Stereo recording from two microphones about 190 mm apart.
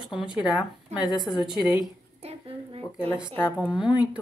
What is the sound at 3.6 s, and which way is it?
Speech, 5° right (ahead or behind).